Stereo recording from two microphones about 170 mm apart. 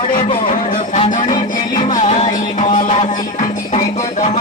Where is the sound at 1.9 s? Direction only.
40° left (ahead or behind).